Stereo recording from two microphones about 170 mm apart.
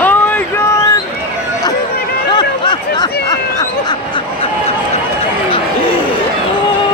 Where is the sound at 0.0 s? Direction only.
10° left (ahead or behind).